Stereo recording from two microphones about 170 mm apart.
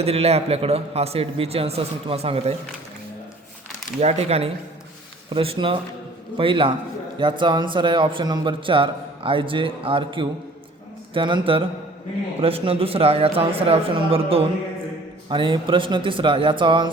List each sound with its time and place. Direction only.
0.0 s a man's voice: 35° right (ahead or behind)
4.0 s a man's voice: 40° right (ahead or behind)